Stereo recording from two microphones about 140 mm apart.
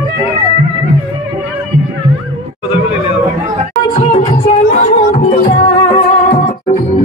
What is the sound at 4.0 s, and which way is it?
Music, 55° left (ahead or behind).